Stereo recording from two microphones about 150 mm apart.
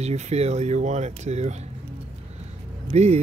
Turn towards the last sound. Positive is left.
turn(degrees=-45)  # may be behind; listen again after turning